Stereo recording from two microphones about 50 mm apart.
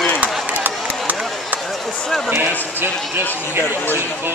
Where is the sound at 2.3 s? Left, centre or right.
Right.